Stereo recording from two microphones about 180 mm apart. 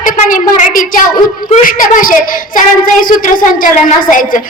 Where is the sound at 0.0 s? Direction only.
50° left (ahead or behind).